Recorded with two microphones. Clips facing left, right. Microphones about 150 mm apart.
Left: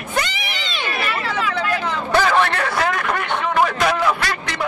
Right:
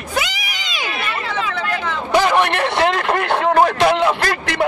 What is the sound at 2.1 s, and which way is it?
Speech, 15° right (ahead or behind).